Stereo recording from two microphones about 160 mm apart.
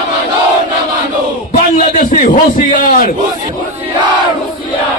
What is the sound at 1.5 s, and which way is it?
A man's voice, 50° left (ahead or behind).